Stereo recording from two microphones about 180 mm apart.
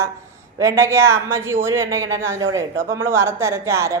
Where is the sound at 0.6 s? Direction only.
15° right (ahead or behind).